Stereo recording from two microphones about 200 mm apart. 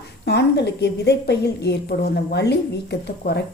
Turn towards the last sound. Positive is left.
turn(degrees=55)  # may be behind; listen again after turning